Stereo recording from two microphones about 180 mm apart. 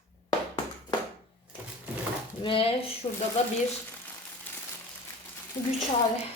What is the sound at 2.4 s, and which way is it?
Speech, 30° left (ahead or behind).